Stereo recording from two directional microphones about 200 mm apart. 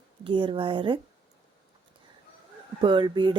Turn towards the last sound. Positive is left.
turn(degrees=-25)  # may be behind; listen again after turning